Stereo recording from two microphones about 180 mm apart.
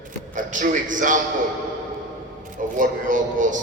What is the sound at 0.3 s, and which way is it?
Speech, 45° right (ahead or behind).